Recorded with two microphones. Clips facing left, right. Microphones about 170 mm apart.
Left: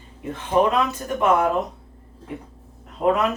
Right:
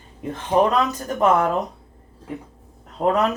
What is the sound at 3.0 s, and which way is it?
Speech, 30° right (ahead or behind).